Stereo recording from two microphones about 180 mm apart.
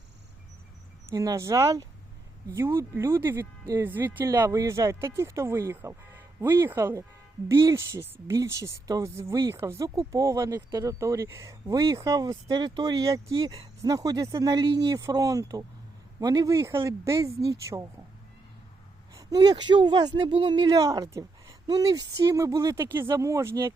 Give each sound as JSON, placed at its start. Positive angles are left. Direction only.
{"t": 1.1, "sound": "a woman's voice", "side_deg": -20}
{"t": 13.2, "sound": "a woman's voice", "side_deg": -30}
{"t": 19.1, "sound": "a woman's voice", "side_deg": -20}